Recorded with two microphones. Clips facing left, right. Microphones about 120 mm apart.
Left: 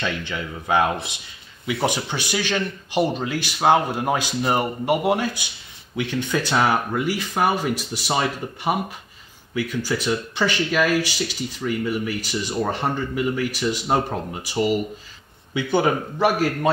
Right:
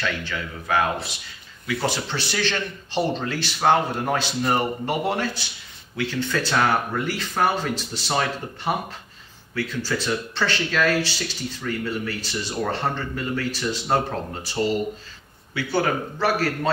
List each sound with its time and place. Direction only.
0.0 s speech: 20° left (ahead or behind)